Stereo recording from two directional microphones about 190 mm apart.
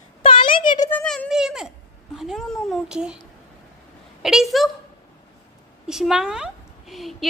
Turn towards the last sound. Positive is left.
turn(degrees=0)  # may be behind; listen again after turning